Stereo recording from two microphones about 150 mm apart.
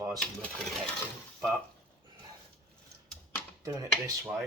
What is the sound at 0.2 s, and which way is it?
Speech, 5° left (ahead or behind).